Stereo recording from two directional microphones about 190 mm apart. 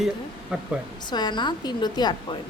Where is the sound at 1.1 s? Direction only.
25° left (ahead or behind).